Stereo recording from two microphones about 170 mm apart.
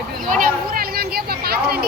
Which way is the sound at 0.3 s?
55° right (ahead or behind).